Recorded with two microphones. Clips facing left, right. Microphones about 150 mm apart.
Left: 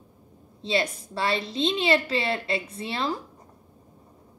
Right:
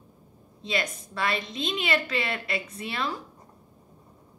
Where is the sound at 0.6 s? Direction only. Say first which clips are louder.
Left 4 dB; 30° left (ahead or behind).